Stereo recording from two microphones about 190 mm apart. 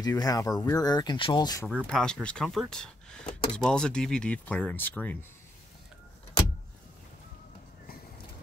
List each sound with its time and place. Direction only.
0.0 s speech: 20° left (ahead or behind)
1.9 s speech: 5° left (ahead or behind)